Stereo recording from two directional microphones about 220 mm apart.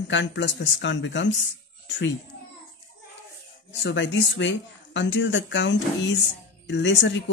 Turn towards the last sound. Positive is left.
turn(degrees=55)  # may be behind; listen again after turning